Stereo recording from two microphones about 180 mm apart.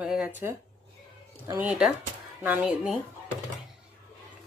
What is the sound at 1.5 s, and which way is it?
Speech, 10° right (ahead or behind).